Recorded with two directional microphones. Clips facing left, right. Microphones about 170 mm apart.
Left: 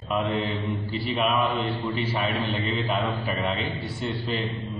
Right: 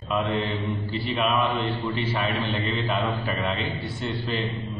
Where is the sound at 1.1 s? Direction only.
Centre (ahead or behind).